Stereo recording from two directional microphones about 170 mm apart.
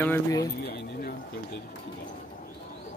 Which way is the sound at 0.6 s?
65° left (ahead or behind).